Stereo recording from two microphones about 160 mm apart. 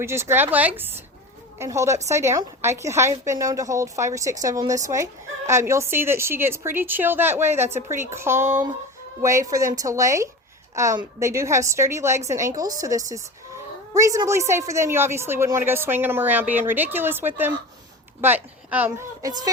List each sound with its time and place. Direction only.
0.0 s a woman's voice: 15° right (ahead or behind)
19.2 s a woman's voice: 25° right (ahead or behind)